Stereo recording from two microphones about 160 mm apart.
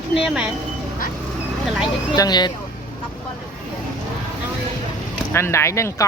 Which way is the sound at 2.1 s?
25° left (ahead or behind).